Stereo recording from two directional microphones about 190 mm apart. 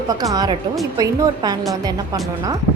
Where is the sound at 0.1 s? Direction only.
20° right (ahead or behind).